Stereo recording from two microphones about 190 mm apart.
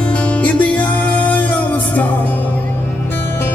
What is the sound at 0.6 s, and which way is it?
Music, 5° left (ahead or behind).